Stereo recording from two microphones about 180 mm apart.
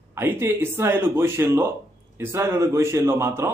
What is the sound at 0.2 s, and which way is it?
Speech, 15° right (ahead or behind).